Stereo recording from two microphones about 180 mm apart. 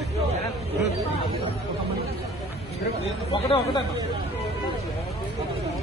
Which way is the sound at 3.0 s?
30° left (ahead or behind).